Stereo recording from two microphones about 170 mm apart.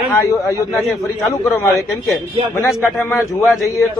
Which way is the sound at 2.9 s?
15° left (ahead or behind).